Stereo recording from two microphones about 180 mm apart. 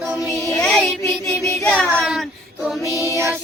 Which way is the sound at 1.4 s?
10° left (ahead or behind).